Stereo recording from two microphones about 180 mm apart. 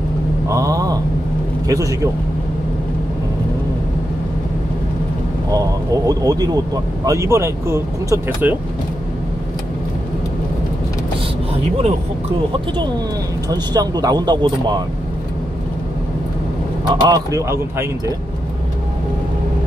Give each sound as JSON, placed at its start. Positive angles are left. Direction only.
{"t": 0.5, "sound": "a sound", "side_deg": -20}
{"t": 1.7, "sound": "speech", "side_deg": -20}
{"t": 5.5, "sound": "speech", "side_deg": -20}
{"t": 13.5, "sound": "speech", "side_deg": -20}
{"t": 16.8, "sound": "speech", "side_deg": -25}